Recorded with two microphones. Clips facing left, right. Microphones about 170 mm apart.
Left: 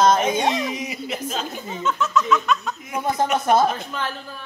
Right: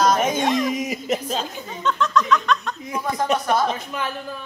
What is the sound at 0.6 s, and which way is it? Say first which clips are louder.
Speech: right 4 dB; 45° right (ahead or behind).